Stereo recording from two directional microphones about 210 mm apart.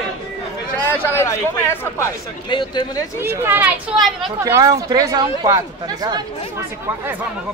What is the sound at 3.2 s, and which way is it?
Speech, 10° right (ahead or behind).